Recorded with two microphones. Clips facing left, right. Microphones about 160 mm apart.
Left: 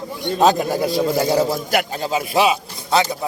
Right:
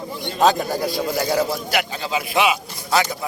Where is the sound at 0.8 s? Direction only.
20° left (ahead or behind).